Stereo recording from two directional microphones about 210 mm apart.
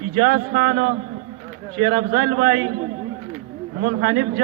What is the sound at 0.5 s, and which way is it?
A man's voice, 40° right (ahead or behind).